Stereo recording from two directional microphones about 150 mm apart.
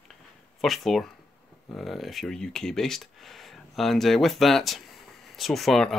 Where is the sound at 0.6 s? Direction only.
Centre (ahead or behind).